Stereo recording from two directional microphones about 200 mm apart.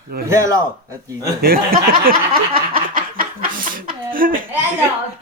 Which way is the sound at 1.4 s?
45° right (ahead or behind).